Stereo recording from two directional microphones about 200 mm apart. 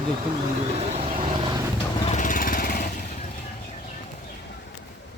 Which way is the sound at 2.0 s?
40° left (ahead or behind).